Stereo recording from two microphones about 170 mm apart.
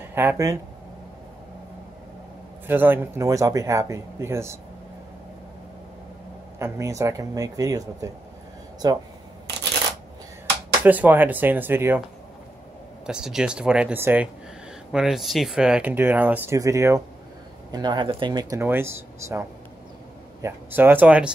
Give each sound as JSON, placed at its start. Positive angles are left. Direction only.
{"t": 0.1, "sound": "speech", "side_deg": -10}
{"t": 2.6, "sound": "speech", "side_deg": -10}
{"t": 6.6, "sound": "speech", "side_deg": -20}
{"t": 10.8, "sound": "speech", "side_deg": -10}
{"t": 13.0, "sound": "speech", "side_deg": -5}
{"t": 20.4, "sound": "speech", "side_deg": -10}